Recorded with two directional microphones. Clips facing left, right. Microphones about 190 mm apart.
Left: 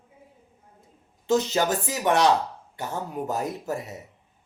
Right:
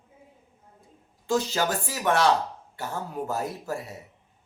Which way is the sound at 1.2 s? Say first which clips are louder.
Left 3 dB; 20° left (ahead or behind).